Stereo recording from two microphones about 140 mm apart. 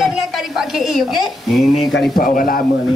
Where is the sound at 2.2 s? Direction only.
85° left.